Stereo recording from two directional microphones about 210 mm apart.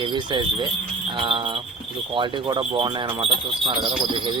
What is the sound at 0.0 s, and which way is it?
Speech, 20° right (ahead or behind).